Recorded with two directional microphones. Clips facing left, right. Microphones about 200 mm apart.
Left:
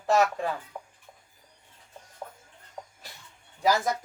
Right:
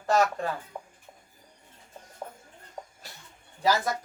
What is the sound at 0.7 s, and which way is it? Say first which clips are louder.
Music: right 1 dB; 5° right (ahead or behind).